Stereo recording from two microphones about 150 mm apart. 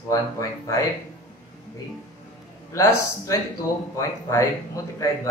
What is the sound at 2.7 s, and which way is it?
Speech, 20° left (ahead or behind).